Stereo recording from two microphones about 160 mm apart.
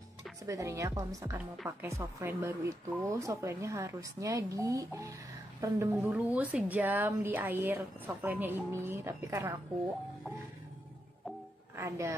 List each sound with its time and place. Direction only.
0.5 s a woman's voice: 20° right (ahead or behind)
11.7 s a woman's voice: 20° right (ahead or behind)